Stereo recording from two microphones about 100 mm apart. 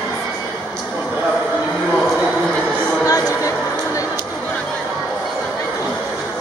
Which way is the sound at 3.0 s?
35° left (ahead or behind).